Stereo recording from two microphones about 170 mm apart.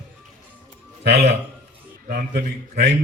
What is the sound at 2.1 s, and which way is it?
Speech, 60° right (ahead or behind).